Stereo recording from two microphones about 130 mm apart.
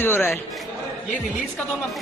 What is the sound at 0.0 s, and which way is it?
Speech, 15° left (ahead or behind).